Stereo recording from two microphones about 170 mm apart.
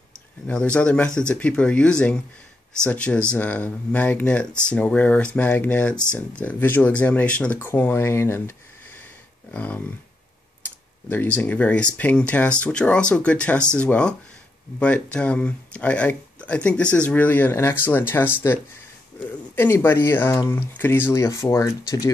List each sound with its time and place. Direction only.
0.5 s speech: 5° left (ahead or behind)